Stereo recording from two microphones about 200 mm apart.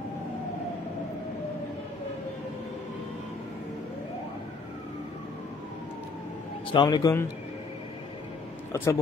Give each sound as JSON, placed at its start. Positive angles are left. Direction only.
{"t": 6.7, "sound": "a man's voice", "side_deg": 20}
{"t": 8.7, "sound": "speech", "side_deg": 10}